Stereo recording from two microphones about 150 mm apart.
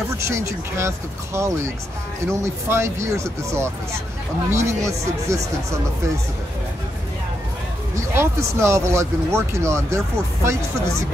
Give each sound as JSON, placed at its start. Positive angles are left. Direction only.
{"t": 0.2, "sound": "speech", "side_deg": -20}
{"t": 8.1, "sound": "speech", "side_deg": -15}